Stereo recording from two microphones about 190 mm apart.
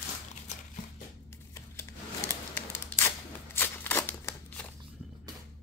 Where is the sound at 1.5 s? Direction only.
15° left (ahead or behind).